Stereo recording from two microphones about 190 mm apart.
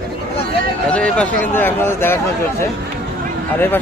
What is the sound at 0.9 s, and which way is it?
A man's voice, 5° left (ahead or behind).